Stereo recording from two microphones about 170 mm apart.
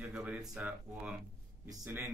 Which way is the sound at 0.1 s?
5° right (ahead or behind).